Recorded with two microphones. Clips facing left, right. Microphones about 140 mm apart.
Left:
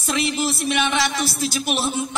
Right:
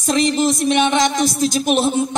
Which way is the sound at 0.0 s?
40° right (ahead or behind).